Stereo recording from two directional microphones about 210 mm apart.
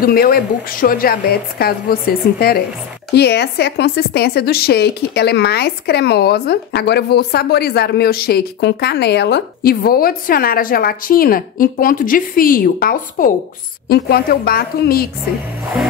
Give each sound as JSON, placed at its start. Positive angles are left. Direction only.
{"t": 0.0, "sound": "a woman's voice", "side_deg": 45}